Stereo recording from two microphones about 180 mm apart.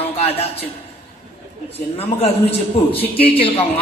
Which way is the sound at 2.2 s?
35° left (ahead or behind).